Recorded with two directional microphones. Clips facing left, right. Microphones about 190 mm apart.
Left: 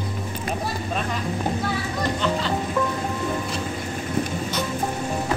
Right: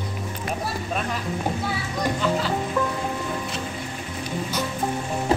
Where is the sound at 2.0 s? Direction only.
5° right (ahead or behind).